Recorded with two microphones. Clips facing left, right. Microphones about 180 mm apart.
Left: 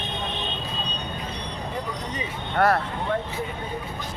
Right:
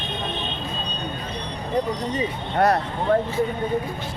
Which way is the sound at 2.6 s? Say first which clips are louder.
Right 2 dB; 20° right (ahead or behind).